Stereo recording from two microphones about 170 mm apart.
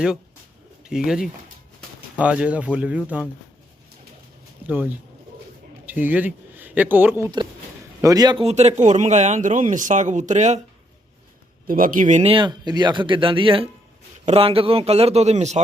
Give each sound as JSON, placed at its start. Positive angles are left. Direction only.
{"t": 0.9, "sound": "speech", "side_deg": -5}
{"t": 4.6, "sound": "speech", "side_deg": -10}
{"t": 8.0, "sound": "a man's voice", "side_deg": -20}
{"t": 8.4, "sound": "speech", "side_deg": -40}
{"t": 11.7, "sound": "speech", "side_deg": -55}